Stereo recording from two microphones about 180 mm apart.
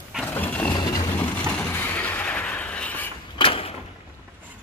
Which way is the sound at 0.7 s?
20° left (ahead or behind).